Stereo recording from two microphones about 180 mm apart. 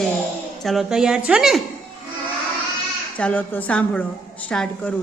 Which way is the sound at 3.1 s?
10° left (ahead or behind).